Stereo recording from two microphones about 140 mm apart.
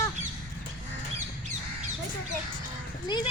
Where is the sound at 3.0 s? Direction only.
30° left (ahead or behind).